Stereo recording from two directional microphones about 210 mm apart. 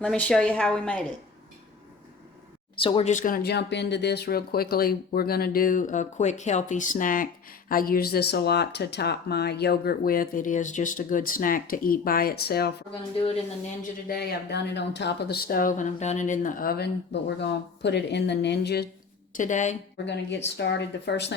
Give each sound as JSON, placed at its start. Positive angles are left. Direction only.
{"t": 0.0, "sound": "a woman's voice", "side_deg": 5}
{"t": 2.7, "sound": "speech", "side_deg": 25}
{"t": 14.1, "sound": "speech", "side_deg": 50}
{"t": 19.3, "sound": "a woman's voice", "side_deg": 35}
{"t": 20.1, "sound": "speech", "side_deg": 55}